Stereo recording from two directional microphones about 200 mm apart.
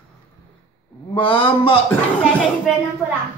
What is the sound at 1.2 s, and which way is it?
Speech, 25° left (ahead or behind).